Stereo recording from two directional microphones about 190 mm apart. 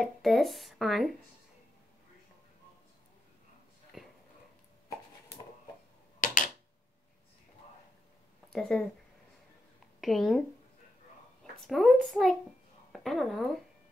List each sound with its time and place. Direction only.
0.0 s speech: centre (ahead or behind)
3.9 s a sound: centre (ahead or behind)
6.2 s a sound: 45° left (ahead or behind)
8.5 s speech: 5° left (ahead or behind)
9.9 s a woman's voice: centre (ahead or behind)
11.6 s speech: centre (ahead or behind)